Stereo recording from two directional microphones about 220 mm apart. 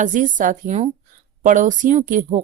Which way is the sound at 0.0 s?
35° right (ahead or behind).